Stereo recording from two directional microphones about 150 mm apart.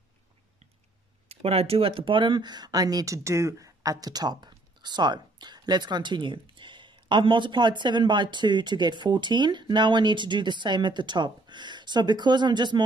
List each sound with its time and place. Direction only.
1.3 s speech: 40° right (ahead or behind)